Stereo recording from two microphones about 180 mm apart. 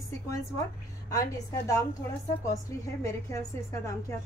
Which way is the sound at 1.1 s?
20° left (ahead or behind).